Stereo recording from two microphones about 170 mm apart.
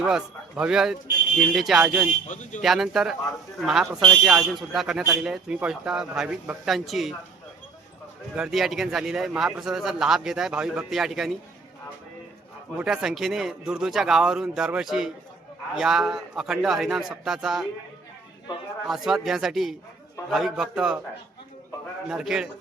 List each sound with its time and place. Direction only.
0.0 s speech: 5° right (ahead or behind)
2.2 s speech: 45° left (ahead or behind)
2.6 s speech: centre (ahead or behind)
8.4 s speech: centre (ahead or behind)
12.7 s speech: 5° right (ahead or behind)
18.9 s speech: centre (ahead or behind)
22.1 s speech: 5° right (ahead or behind)